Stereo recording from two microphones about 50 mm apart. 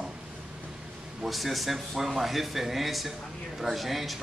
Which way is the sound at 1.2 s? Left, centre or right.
Centre.